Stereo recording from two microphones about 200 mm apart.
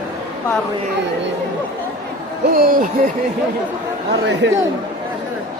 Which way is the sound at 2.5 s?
50° right (ahead or behind).